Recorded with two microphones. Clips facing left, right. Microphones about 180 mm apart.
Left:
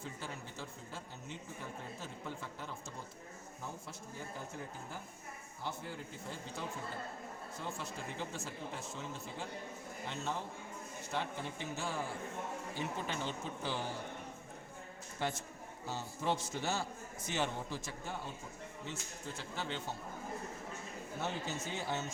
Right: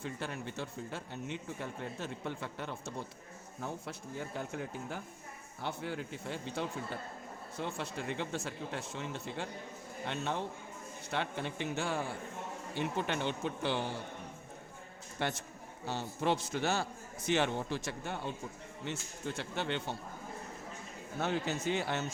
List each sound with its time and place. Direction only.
0.0 s a man's voice: 65° right (ahead or behind)
4.4 s a man's voice: 70° right (ahead or behind)
11.1 s a man's voice: 70° right (ahead or behind)
15.2 s a man's voice: 70° right (ahead or behind)
21.2 s a man's voice: 70° right (ahead or behind)